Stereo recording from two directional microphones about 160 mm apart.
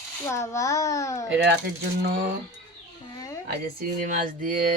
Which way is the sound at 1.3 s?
90° right.